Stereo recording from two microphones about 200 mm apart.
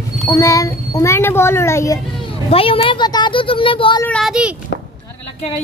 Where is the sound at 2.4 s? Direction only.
30° left (ahead or behind).